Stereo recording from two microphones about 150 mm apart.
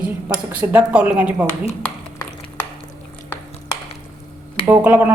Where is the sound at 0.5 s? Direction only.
10° right (ahead or behind).